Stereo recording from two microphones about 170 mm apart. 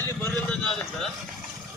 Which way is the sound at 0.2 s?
10° left (ahead or behind).